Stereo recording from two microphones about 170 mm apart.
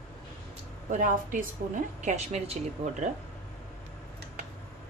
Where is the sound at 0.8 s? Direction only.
50° right (ahead or behind).